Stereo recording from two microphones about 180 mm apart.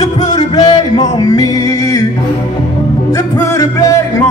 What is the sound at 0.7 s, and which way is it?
Music, 20° left (ahead or behind).